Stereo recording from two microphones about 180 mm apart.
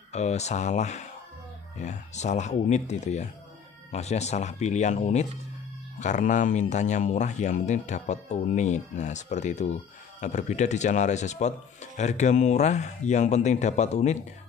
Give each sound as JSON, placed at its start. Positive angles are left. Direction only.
{"t": 0.1, "sound": "speech", "side_deg": 40}